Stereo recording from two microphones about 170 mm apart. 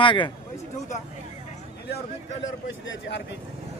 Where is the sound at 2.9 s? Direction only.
90° left.